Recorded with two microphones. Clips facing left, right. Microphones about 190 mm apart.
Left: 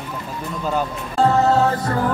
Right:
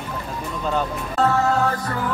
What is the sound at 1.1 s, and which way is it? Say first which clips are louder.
Music: left 4 dB; 25° left (ahead or behind).